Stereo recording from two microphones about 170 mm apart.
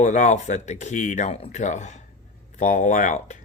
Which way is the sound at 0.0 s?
45° left (ahead or behind).